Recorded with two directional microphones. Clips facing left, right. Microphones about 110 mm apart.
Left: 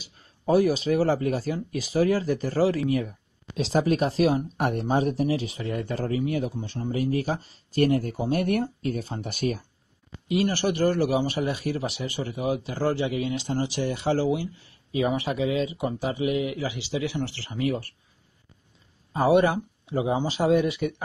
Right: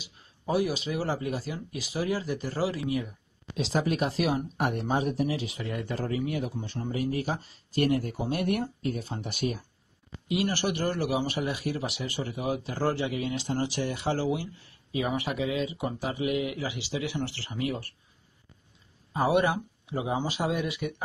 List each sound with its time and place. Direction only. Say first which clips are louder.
0.0 s speech: left 7 dB; 40° left (ahead or behind); by 17.2 s 25° left (ahead or behind)
19.2 s speech: left 5 dB; 25° left (ahead or behind)